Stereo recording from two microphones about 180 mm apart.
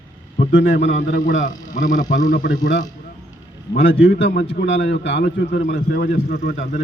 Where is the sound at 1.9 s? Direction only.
45° left (ahead or behind).